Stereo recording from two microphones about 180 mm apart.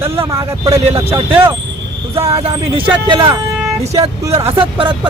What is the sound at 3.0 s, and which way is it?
Speech, 25° right (ahead or behind).